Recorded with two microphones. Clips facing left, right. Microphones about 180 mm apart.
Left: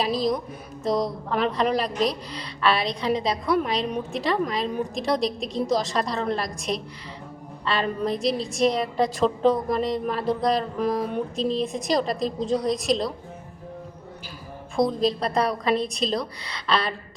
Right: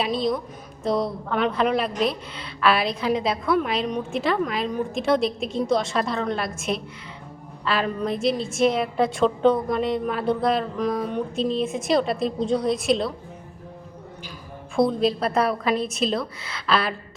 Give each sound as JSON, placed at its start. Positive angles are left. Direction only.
{"t": 0.0, "sound": "a woman's voice", "side_deg": 0}
{"t": 14.8, "sound": "a woman's voice", "side_deg": 0}